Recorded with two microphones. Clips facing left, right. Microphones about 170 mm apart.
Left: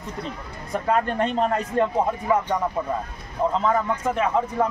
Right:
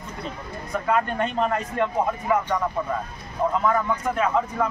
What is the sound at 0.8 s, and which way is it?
Speech, 30° left (ahead or behind).